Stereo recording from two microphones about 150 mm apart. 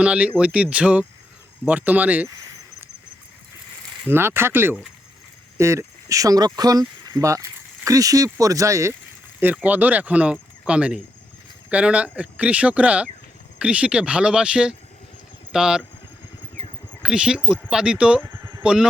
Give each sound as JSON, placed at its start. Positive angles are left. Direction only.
{"t": 0.0, "sound": "speech", "side_deg": -10}
{"t": 4.1, "sound": "speech", "side_deg": -15}
{"t": 17.0, "sound": "speech", "side_deg": -5}